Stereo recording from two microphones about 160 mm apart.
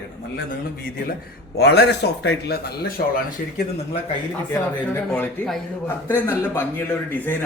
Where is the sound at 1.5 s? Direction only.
90° left.